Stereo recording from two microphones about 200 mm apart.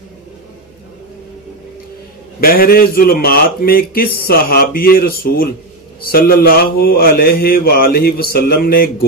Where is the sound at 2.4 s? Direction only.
50° left (ahead or behind).